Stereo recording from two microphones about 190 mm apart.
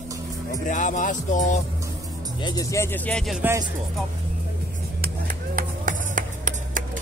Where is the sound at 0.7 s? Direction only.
40° left (ahead or behind).